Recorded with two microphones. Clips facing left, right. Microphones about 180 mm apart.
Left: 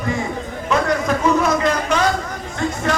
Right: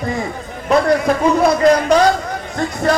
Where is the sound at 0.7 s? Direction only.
35° right (ahead or behind).